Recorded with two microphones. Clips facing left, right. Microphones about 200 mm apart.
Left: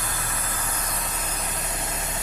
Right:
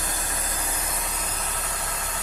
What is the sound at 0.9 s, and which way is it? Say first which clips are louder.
Vehicle: left 1 dB; 5° left (ahead or behind).